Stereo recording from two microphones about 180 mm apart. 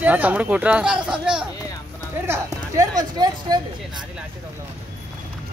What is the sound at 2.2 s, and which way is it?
Speech, 15° right (ahead or behind).